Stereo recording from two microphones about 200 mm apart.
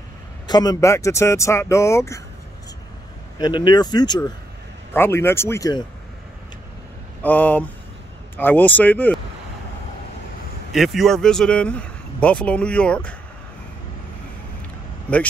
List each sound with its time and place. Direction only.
0.5 s speech: 20° left (ahead or behind)
3.3 s speech: 20° left (ahead or behind)
4.9 s speech: 10° left (ahead or behind)
7.2 s speech: 10° left (ahead or behind)
10.7 s speech: centre (ahead or behind)
15.1 s speech: 5° left (ahead or behind)